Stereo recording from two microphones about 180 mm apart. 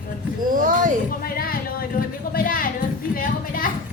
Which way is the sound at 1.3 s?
55° left (ahead or behind).